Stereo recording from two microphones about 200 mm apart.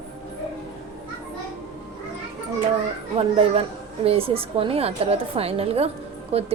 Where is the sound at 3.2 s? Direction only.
25° right (ahead or behind).